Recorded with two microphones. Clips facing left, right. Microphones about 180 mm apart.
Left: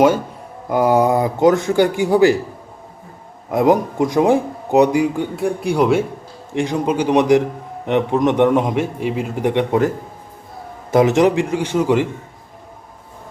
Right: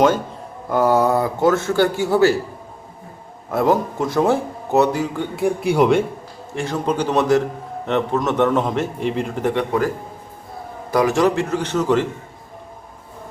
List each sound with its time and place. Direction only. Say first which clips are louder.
0.7 s a man's voice: left 2 dB; 15° left (ahead or behind)
3.5 s a man's voice: left 3 dB; 15° left (ahead or behind)
5.4 s speech: right 1 dB; centre (ahead or behind)
6.5 s a man's voice: left 3 dB; 15° left (ahead or behind)
10.9 s a man's voice: left 3 dB; 20° left (ahead or behind)